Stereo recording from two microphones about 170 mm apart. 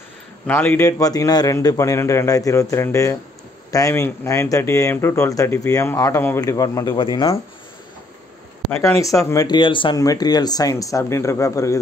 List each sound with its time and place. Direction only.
0.5 s speech: 10° left (ahead or behind); by 7.3 s 30° left (ahead or behind)
9.0 s speech: 20° left (ahead or behind)